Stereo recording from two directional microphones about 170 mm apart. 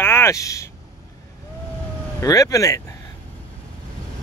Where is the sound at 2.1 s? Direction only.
20° left (ahead or behind).